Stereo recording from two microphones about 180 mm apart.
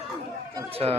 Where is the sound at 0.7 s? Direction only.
35° right (ahead or behind).